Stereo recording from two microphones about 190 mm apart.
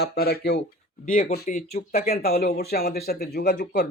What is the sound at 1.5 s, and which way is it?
Speech, 40° left (ahead or behind).